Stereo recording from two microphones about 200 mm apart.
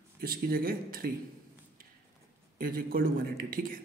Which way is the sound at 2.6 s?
45° right (ahead or behind).